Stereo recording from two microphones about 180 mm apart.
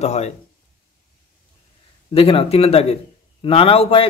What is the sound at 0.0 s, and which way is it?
Speech, 35° left (ahead or behind).